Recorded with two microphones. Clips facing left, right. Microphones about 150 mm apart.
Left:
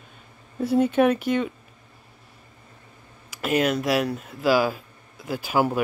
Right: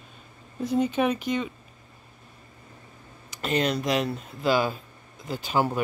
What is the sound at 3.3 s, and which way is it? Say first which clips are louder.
Speech: left 3 dB; 5° left (ahead or behind).